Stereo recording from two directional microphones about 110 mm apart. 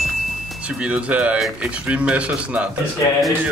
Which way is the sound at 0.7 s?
10° right (ahead or behind).